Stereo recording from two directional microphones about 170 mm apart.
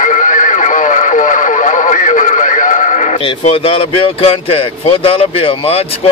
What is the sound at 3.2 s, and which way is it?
Speech, 35° left (ahead or behind).